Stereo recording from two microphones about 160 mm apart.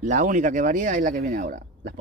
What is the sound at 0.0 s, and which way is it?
Speech, 50° right (ahead or behind).